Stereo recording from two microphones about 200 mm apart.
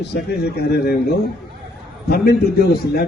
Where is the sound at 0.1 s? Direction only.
55° left (ahead or behind).